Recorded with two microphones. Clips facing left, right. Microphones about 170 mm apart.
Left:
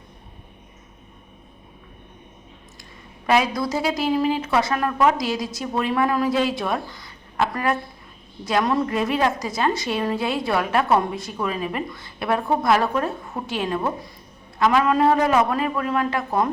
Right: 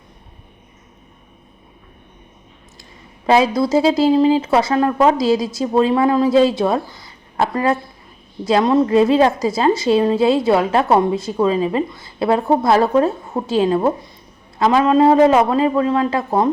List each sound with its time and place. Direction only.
3.2 s a woman's voice: 25° right (ahead or behind)